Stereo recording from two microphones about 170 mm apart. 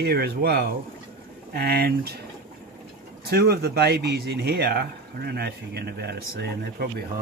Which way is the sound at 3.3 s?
65° right (ahead or behind).